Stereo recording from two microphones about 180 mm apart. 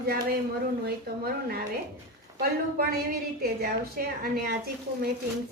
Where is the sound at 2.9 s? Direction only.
60° right (ahead or behind).